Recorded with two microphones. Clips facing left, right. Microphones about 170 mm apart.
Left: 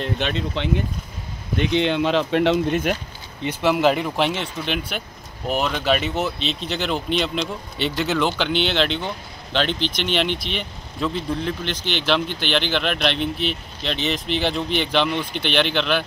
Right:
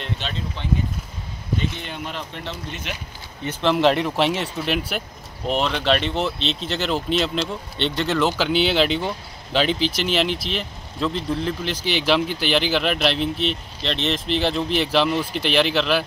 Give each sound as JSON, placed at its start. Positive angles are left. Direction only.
{"t": 0.2, "sound": "speech", "side_deg": 70}
{"t": 3.4, "sound": "speech", "side_deg": 5}